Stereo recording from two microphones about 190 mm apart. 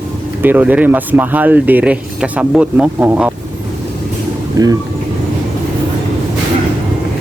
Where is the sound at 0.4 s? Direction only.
10° right (ahead or behind).